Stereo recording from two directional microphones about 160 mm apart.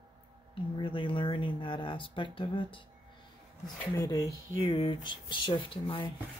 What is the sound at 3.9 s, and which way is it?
Speech, 25° left (ahead or behind).